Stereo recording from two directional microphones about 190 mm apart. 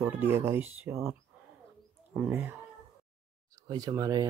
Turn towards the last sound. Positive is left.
turn(degrees=-20)  # may be behind; listen again after turning